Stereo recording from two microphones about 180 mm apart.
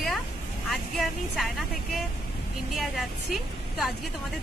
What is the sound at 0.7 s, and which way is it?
Speech, centre (ahead or behind).